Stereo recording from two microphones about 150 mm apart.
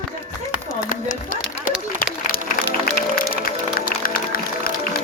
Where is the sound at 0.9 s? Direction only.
65° left (ahead or behind).